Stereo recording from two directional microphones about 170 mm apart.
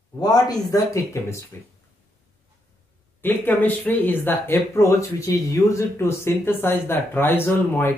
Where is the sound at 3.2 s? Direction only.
10° left (ahead or behind).